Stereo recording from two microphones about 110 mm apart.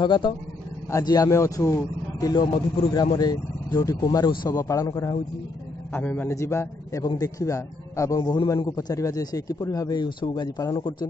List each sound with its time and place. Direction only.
0.0 s speech: 45° left (ahead or behind)
0.9 s a man's voice: 35° left (ahead or behind)
5.9 s a man's voice: 20° left (ahead or behind); by 8.6 s 45° left (ahead or behind)
8.6 s a man's voice: 35° left (ahead or behind)